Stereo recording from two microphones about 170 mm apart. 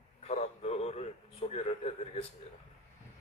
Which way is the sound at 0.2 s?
40° left (ahead or behind).